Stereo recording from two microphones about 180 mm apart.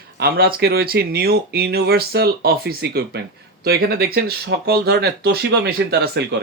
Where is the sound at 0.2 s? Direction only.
60° right (ahead or behind).